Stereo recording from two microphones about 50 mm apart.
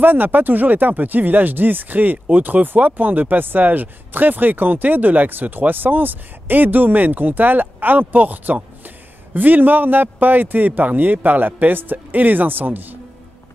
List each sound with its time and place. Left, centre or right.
0.0 s speech: right